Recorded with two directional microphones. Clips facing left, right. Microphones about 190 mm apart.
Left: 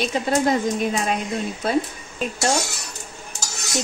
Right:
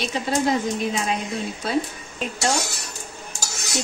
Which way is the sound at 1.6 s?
50° left (ahead or behind).